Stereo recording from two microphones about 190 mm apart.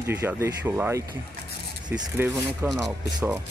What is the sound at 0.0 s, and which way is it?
Speech, 10° right (ahead or behind).